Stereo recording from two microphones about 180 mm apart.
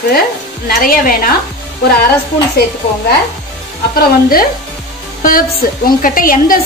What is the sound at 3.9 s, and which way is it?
A woman's voice, 55° left (ahead or behind).